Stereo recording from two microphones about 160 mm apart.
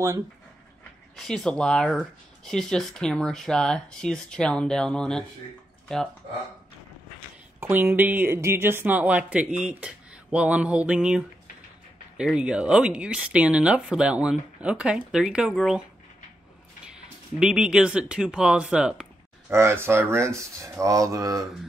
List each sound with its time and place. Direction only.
1.1 s speech: 5° left (ahead or behind)
7.6 s speech: 15° right (ahead or behind)
16.8 s speech: 5° right (ahead or behind)
19.5 s speech: 15° right (ahead or behind)